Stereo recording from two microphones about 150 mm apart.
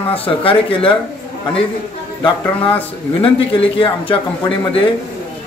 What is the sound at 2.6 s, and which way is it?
Speech, 35° left (ahead or behind).